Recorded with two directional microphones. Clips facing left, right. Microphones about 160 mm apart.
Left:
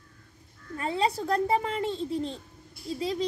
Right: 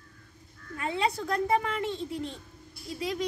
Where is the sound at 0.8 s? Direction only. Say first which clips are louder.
Left 2 dB; 35° left (ahead or behind).